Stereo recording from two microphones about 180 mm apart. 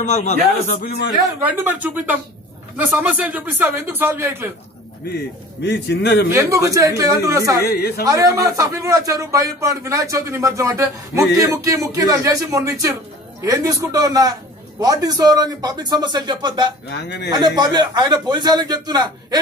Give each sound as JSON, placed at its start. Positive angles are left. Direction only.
{"t": 0.0, "sound": "a man's voice", "side_deg": 40}
{"t": 0.8, "sound": "speech", "side_deg": 65}
{"t": 1.4, "sound": "a man's voice", "side_deg": -10}
{"t": 5.1, "sound": "speech", "side_deg": 70}
{"t": 6.3, "sound": "a man's voice", "side_deg": -20}
{"t": 7.6, "sound": "a man's voice", "side_deg": 60}
{"t": 8.0, "sound": "a man's voice", "side_deg": -20}
{"t": 16.9, "sound": "speech", "side_deg": 70}
{"t": 17.3, "sound": "a man's voice", "side_deg": -20}